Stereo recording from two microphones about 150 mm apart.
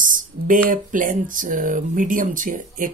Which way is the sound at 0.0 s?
60° right (ahead or behind).